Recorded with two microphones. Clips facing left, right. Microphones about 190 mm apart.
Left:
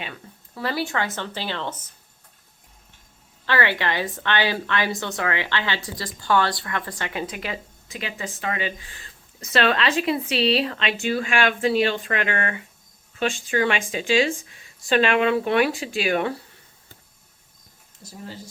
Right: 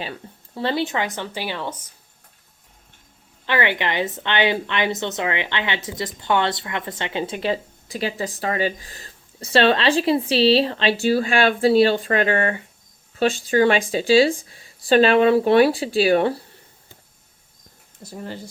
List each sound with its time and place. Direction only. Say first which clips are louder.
0.0 s speech: right 4 dB; 30° right (ahead or behind); by 1.8 s 10° right (ahead or behind)
3.4 s a woman's voice: right 1 dB; 20° right (ahead or behind); by 16.4 s 35° right (ahead or behind)
18.0 s speech: right 5 dB; 60° right (ahead or behind)